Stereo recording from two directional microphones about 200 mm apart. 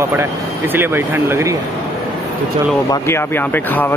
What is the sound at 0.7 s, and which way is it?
Speech, 10° right (ahead or behind).